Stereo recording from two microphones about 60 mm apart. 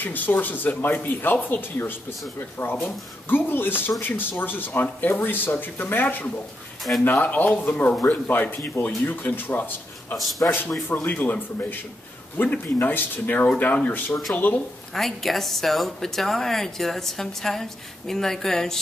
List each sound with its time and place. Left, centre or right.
0.0 s speech: left
10.1 s a woman's voice: centre
11.1 s speech: left
15.0 s a woman's voice: centre